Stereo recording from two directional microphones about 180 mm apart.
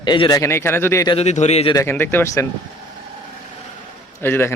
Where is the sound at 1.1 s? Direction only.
40° left (ahead or behind).